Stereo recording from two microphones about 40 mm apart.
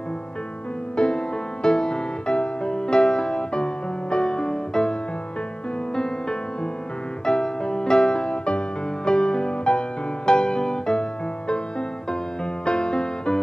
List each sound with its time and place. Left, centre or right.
0.9 s music: left
7.2 s music: centre
12.6 s music: left